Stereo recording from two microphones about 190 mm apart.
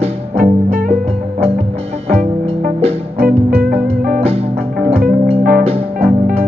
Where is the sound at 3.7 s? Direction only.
50° right (ahead or behind).